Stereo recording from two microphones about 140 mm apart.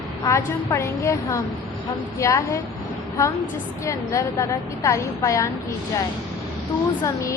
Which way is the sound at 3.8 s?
25° left (ahead or behind).